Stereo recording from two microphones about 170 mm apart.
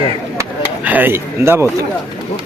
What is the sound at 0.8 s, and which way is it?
Speech, 10° right (ahead or behind).